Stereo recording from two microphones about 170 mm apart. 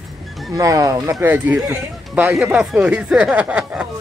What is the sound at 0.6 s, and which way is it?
Speech, 20° right (ahead or behind).